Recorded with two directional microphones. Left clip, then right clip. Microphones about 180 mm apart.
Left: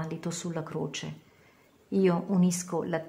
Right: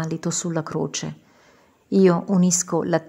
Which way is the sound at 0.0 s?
30° right (ahead or behind).